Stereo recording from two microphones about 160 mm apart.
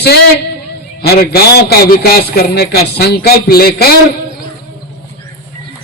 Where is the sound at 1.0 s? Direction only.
75° left (ahead or behind).